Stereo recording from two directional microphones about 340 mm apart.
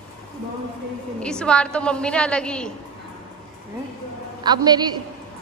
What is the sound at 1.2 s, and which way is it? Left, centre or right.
A woman's voice, centre.